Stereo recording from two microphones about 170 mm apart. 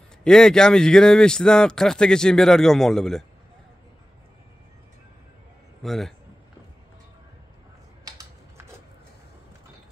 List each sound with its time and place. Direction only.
0.2 s speech: 5° left (ahead or behind)
5.8 s a man's voice: centre (ahead or behind)
8.0 s typing: 20° right (ahead or behind)